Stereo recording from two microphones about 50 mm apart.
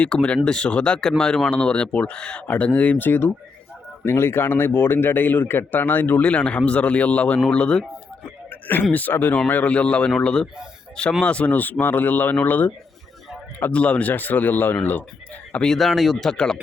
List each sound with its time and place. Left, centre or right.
0.0 s a man's voice: left
2.5 s speech: left
4.0 s a man's voice: left
8.4 s a man's voice: left
13.7 s speech: left
15.8 s speech: centre